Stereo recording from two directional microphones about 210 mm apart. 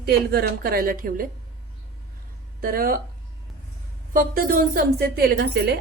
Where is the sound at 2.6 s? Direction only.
45° right (ahead or behind).